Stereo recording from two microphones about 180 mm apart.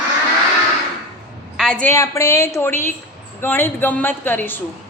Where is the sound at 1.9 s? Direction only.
15° left (ahead or behind).